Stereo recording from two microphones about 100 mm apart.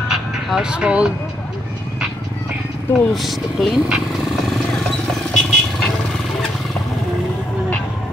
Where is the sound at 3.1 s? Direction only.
Centre (ahead or behind).